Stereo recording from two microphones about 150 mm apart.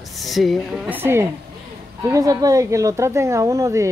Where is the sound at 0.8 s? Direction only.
15° right (ahead or behind).